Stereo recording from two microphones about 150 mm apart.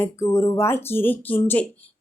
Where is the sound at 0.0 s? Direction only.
20° left (ahead or behind).